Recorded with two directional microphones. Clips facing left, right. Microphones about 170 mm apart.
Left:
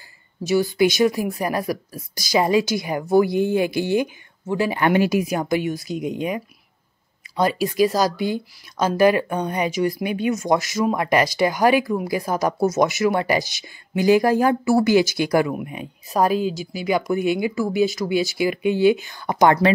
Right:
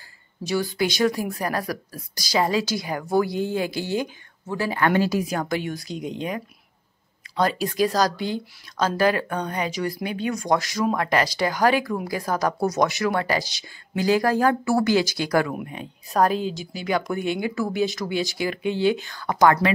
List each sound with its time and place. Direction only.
0.5 s speech: 10° left (ahead or behind)